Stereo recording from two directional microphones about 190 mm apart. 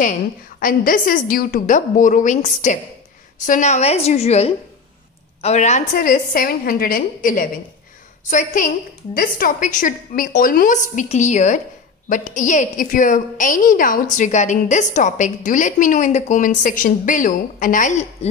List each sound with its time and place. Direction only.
0.0 s a woman's voice: 45° left (ahead or behind)